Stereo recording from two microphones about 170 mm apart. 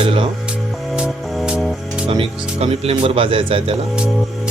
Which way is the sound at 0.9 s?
5° right (ahead or behind).